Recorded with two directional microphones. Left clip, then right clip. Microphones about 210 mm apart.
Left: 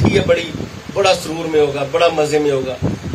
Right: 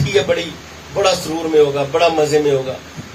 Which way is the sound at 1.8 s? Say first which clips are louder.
Even; 35° left (ahead or behind).